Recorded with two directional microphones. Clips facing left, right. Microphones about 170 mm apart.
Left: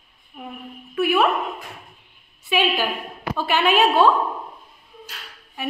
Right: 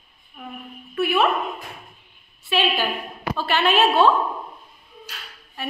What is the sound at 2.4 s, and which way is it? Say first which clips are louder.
A woman's voice: left 1 dB; 10° left (ahead or behind).